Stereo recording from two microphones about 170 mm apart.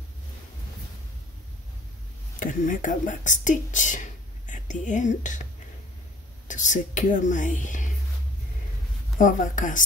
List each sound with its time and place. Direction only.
2.4 s speech: 50° left (ahead or behind)
9.2 s speech: 50° left (ahead or behind)